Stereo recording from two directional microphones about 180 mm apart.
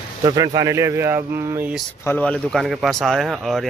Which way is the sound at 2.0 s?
10° left (ahead or behind).